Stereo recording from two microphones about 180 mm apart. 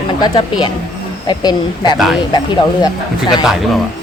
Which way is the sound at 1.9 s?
Centre (ahead or behind).